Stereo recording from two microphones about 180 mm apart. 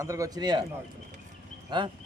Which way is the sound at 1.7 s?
25° right (ahead or behind).